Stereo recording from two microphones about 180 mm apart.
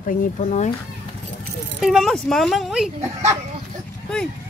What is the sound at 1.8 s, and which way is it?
Speech, centre (ahead or behind).